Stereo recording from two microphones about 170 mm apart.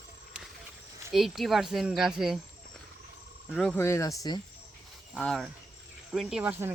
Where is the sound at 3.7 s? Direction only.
15° left (ahead or behind).